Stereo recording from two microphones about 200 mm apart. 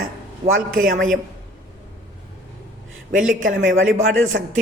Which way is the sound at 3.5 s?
70° right (ahead or behind).